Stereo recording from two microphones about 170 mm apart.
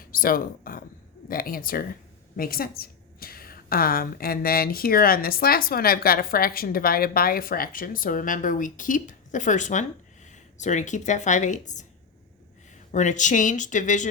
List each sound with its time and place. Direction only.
0.0 s a sound: 55° left (ahead or behind)
1.3 s a woman's voice: 60° left (ahead or behind)
12.9 s speech: 45° left (ahead or behind)